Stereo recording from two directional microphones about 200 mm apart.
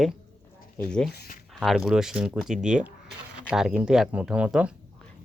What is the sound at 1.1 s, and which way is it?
Speech, 45° left (ahead or behind).